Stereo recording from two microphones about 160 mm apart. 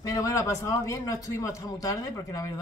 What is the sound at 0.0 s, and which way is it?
A man's voice, 20° left (ahead or behind).